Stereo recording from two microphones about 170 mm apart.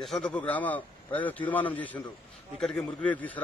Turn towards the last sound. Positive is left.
turn(degrees=10)  # may be behind; listen again after turning